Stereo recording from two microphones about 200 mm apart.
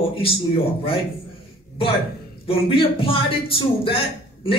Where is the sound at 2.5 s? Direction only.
25° left (ahead or behind).